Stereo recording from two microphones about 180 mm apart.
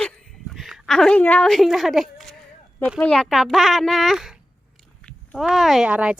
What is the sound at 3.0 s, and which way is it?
A child's voice, 5° left (ahead or behind).